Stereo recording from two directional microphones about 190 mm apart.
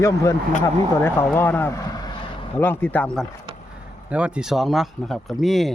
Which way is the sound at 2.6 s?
10° left (ahead or behind).